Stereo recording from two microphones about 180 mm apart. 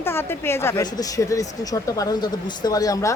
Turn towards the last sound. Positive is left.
turn(degrees=20)  # may be behind; listen again after turning